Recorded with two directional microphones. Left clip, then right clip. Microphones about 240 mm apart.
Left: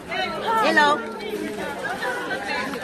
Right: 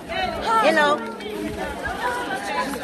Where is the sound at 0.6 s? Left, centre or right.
Left.